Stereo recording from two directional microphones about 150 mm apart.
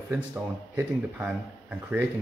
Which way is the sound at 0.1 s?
10° right (ahead or behind).